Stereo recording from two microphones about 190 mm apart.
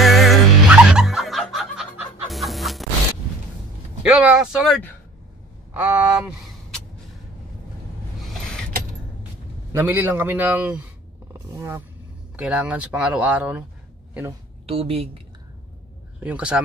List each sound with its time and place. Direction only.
0.0 s music: centre (ahead or behind)
4.0 s speech: 5° right (ahead or behind)
8.2 s power windows: centre (ahead or behind)
9.7 s speech: 10° right (ahead or behind)
14.7 s speech: 30° right (ahead or behind)
16.2 s speech: 5° right (ahead or behind)